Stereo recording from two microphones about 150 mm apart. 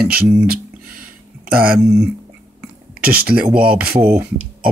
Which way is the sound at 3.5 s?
90° right.